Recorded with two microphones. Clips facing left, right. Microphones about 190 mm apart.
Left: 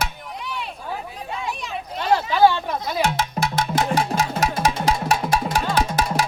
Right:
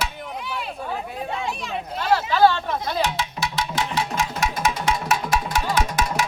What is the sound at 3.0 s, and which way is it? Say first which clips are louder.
Music: left 4 dB; 45° left (ahead or behind).